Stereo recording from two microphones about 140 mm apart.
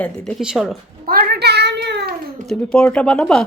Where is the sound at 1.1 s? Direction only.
90° right.